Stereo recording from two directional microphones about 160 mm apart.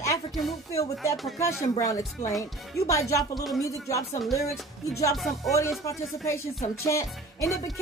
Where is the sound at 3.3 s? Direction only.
Centre (ahead or behind).